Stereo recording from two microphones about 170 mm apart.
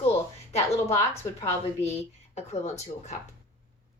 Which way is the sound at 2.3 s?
40° left (ahead or behind).